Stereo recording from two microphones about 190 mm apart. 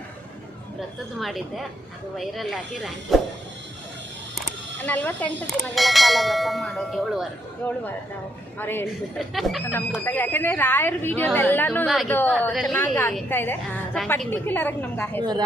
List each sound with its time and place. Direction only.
1.2 s bell: centre (ahead or behind)
4.9 s bell: 5° left (ahead or behind)
8.5 s a woman's voice: 10° left (ahead or behind)
9.1 s bell: centre (ahead or behind)
9.7 s a woman's voice: 10° left (ahead or behind)
11.9 s bell: centre (ahead or behind)
12.9 s a woman's voice: 5° left (ahead or behind)
15.2 s a woman's voice: 20° right (ahead or behind)